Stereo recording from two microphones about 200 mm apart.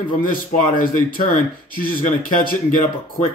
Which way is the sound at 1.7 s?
45° left (ahead or behind).